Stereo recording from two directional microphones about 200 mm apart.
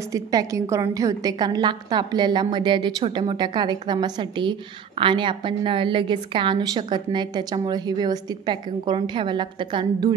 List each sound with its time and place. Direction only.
0.1 s a woman's voice: 15° right (ahead or behind)